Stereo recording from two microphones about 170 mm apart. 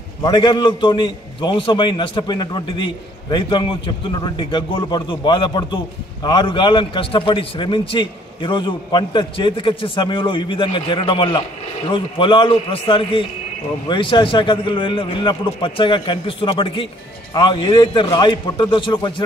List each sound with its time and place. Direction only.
0.2 s a man's voice: 25° left (ahead or behind)